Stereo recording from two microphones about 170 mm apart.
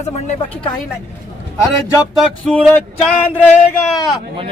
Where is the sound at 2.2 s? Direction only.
5° left (ahead or behind).